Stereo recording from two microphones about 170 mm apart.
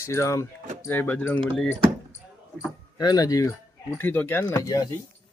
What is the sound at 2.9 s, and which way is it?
Speech, 20° left (ahead or behind).